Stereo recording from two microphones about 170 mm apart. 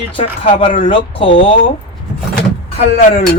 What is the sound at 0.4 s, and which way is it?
Speech, 30° left (ahead or behind).